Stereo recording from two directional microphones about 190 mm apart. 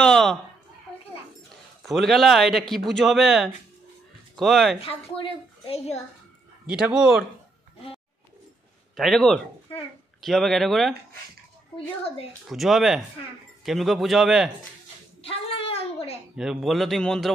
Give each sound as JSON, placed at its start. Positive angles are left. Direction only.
{"t": 0.0, "sound": "a man's voice", "side_deg": 5}
{"t": 1.8, "sound": "a man's voice", "side_deg": 0}
{"t": 4.7, "sound": "a woman's voice", "side_deg": 30}
{"t": 6.7, "sound": "a man's voice", "side_deg": -5}
{"t": 8.9, "sound": "a man's voice", "side_deg": 0}
{"t": 11.7, "sound": "a woman's voice", "side_deg": 30}
{"t": 12.4, "sound": "a man's voice", "side_deg": 0}
{"t": 15.2, "sound": "a sound", "side_deg": 30}
{"t": 16.3, "sound": "a man's voice", "side_deg": 0}